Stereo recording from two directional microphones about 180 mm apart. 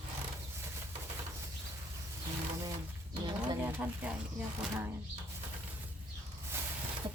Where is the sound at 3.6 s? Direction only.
10° right (ahead or behind).